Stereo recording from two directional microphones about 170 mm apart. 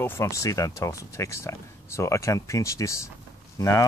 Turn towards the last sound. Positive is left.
turn(degrees=20)  # may be behind; listen again after turning